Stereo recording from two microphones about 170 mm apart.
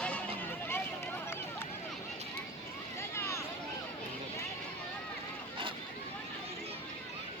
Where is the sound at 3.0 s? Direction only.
15° left (ahead or behind).